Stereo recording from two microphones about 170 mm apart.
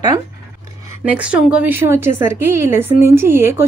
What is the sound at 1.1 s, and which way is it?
A woman's voice, 5° right (ahead or behind).